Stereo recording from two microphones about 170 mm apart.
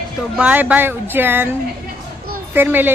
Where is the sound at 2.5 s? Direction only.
10° right (ahead or behind).